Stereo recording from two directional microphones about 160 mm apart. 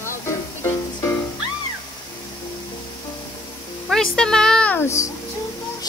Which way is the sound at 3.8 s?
5° left (ahead or behind).